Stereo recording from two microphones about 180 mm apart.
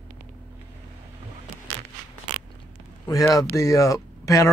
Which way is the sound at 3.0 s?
20° left (ahead or behind).